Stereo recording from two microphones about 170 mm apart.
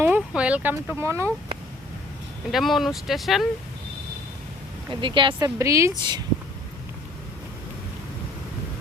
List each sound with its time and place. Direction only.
0.0 s speech: 10° right (ahead or behind)
2.5 s speech: centre (ahead or behind)
4.9 s speech: 30° right (ahead or behind)
5.5 s speech: 15° right (ahead or behind)